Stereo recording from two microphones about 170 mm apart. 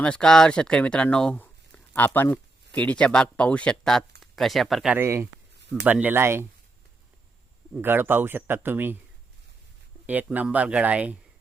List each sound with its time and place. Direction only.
0.0 s speech: 5° left (ahead or behind)
4.9 s speech: 15° right (ahead or behind)
5.5 s a sound: 90° right
5.8 s speech: 10° right (ahead or behind)
7.7 s speech: 10° right (ahead or behind)
10.1 s speech: 10° right (ahead or behind)